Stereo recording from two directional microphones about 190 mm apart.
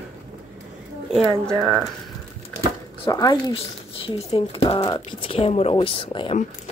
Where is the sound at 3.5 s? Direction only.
30° left (ahead or behind).